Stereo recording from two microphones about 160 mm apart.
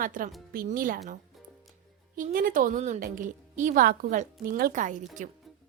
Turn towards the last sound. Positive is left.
turn(degrees=-50)  # may be behind; listen again after turning